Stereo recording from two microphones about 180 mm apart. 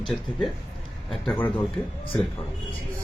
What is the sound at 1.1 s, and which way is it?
Speech, 10° left (ahead or behind).